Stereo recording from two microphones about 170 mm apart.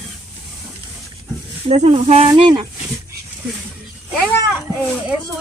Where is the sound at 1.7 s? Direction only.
40° right (ahead or behind).